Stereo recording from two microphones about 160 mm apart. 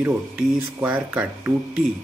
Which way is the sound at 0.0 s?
10° right (ahead or behind).